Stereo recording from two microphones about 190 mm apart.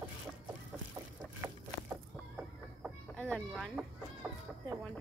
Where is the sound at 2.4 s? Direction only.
Centre (ahead or behind).